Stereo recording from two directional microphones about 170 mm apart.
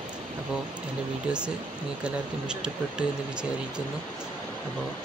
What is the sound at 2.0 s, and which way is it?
Speech, 5° right (ahead or behind).